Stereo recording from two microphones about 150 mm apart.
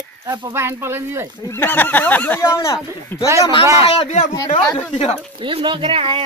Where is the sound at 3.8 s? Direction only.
40° left (ahead or behind).